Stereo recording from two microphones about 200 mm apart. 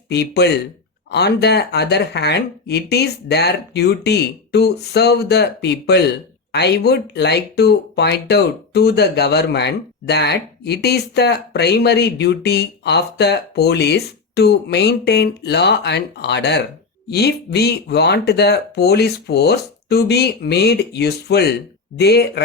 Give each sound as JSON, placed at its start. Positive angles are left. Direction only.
{"t": 0.1, "sound": "speech", "side_deg": 55}